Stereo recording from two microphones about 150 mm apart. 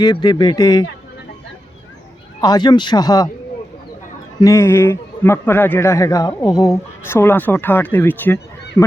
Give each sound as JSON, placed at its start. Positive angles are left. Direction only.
{"t": 0.0, "sound": "speech", "side_deg": 30}
{"t": 2.4, "sound": "speech", "side_deg": 30}
{"t": 4.4, "sound": "a man's voice", "side_deg": 20}